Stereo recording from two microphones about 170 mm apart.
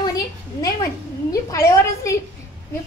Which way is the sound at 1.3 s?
20° left (ahead or behind).